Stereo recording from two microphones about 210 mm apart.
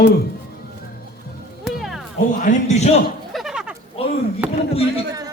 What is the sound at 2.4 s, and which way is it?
Speech, 35° left (ahead or behind).